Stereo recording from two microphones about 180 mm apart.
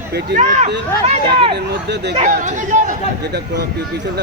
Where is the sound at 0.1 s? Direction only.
65° right (ahead or behind).